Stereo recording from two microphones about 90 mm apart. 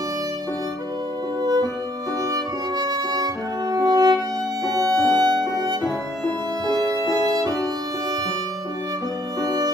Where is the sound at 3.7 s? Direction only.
45° right (ahead or behind).